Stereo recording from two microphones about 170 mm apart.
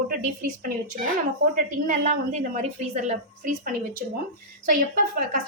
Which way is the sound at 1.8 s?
50° right (ahead or behind).